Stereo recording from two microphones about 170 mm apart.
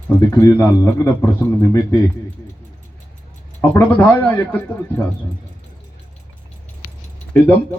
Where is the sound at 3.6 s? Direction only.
10° left (ahead or behind).